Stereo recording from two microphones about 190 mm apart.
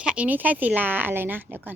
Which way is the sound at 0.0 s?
5° right (ahead or behind).